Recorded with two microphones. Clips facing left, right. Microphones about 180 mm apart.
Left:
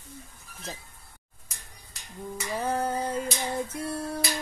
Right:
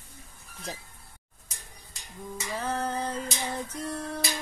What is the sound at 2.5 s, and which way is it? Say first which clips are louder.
Female singing: left 3 dB; 10° left (ahead or behind).